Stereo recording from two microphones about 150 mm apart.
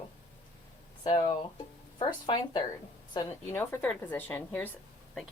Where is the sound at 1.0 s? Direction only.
30° left (ahead or behind).